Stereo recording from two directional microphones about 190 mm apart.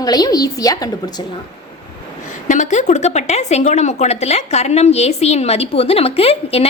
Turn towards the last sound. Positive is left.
turn(degrees=30)  # may be behind; listen again after turning